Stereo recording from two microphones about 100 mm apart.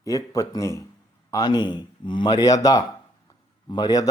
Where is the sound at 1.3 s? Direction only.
45° left (ahead or behind).